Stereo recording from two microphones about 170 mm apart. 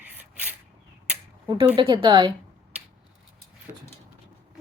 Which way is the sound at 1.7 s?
30° right (ahead or behind).